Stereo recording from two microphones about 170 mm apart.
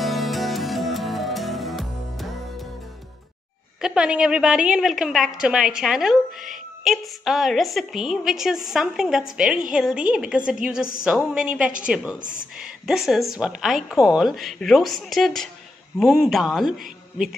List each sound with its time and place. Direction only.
0.0 s music: centre (ahead or behind)
3.8 s a woman's voice: 5° right (ahead or behind)